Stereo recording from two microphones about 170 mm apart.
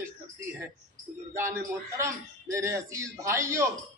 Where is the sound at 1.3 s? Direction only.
15° right (ahead or behind).